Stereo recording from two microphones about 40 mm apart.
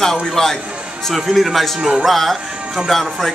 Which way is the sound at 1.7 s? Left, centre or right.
Centre.